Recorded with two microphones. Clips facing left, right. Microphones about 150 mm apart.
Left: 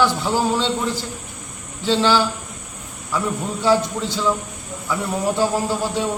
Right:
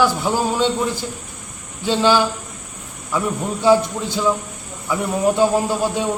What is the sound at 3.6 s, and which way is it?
A man's voice, 15° right (ahead or behind).